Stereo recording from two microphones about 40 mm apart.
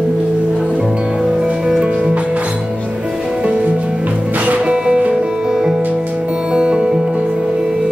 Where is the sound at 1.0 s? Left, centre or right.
Centre.